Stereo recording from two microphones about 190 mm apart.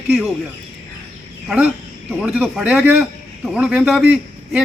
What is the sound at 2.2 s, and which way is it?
A man's voice, 5° right (ahead or behind).